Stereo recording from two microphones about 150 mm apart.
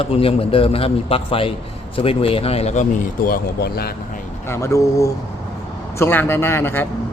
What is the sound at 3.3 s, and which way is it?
Speech, 90° left.